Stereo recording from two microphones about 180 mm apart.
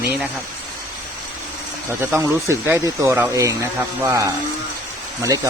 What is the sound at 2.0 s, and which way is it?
Speech, 15° right (ahead or behind).